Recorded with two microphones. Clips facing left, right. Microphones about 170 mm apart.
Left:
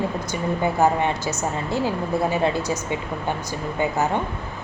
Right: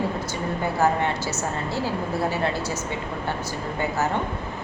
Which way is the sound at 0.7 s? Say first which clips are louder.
Even; 15° left (ahead or behind).